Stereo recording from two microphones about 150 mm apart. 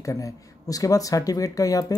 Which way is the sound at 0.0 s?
20° left (ahead or behind).